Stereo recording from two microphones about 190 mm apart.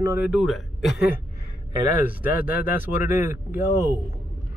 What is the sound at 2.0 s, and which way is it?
Speech, 10° right (ahead or behind).